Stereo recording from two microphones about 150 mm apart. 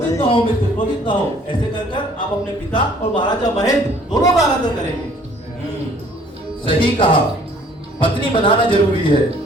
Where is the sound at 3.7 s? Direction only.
20° left (ahead or behind).